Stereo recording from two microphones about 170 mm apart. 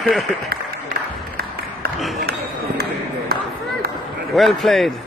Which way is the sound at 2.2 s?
65° right (ahead or behind).